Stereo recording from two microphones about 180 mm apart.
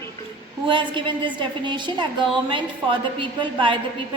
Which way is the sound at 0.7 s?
25° right (ahead or behind).